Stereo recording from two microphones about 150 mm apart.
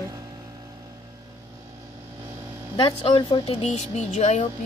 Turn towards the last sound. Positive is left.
turn(degrees=50)  # may be behind; listen again after turning